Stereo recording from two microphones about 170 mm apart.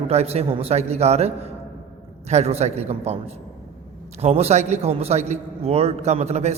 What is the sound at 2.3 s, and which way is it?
Speech, 40° right (ahead or behind).